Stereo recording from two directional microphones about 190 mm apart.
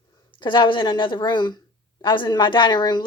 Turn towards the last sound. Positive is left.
turn(degrees=25)  # may be behind; listen again after turning